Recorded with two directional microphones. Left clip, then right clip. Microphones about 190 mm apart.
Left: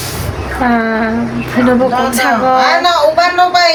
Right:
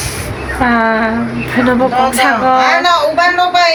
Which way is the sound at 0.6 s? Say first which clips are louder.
Right 2 dB; centre (ahead or behind).